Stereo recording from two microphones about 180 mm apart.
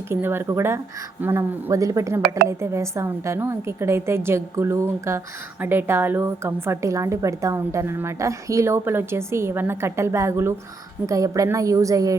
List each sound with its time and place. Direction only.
0.1 s a woman's voice: 10° right (ahead or behind)